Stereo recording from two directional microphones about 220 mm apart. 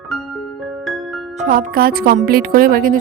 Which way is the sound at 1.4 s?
40° right (ahead or behind).